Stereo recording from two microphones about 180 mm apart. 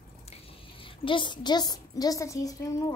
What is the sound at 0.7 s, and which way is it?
A woman's voice, 30° left (ahead or behind).